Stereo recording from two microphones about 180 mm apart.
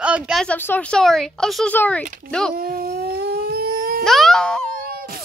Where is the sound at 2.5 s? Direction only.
55° right (ahead or behind).